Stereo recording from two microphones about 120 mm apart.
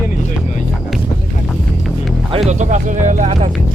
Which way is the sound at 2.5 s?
80° right.